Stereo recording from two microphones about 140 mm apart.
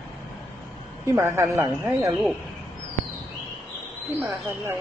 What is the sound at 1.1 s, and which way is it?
Speech, 20° right (ahead or behind).